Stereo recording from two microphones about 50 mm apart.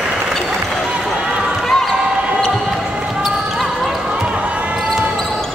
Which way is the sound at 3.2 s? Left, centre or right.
Centre.